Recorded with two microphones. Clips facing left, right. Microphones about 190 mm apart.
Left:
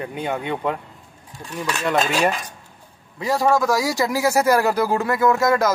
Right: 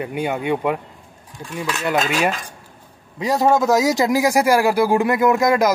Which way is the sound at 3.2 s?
20° right (ahead or behind).